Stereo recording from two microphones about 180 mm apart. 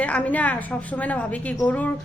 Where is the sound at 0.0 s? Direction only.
10° left (ahead or behind).